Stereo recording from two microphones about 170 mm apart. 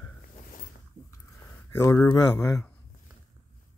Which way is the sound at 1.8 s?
20° left (ahead or behind).